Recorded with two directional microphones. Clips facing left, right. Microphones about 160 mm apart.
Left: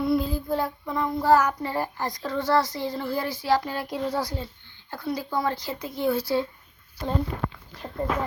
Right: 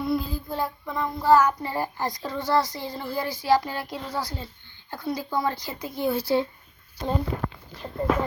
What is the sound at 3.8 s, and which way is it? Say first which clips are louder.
Speech: left 4 dB; 20° left (ahead or behind).